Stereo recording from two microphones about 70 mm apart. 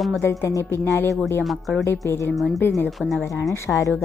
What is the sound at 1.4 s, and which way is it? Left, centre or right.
Speech, centre.